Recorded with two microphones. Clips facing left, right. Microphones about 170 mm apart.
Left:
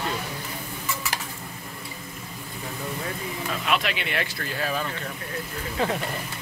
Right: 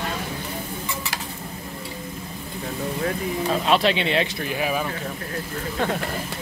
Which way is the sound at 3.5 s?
30° right (ahead or behind).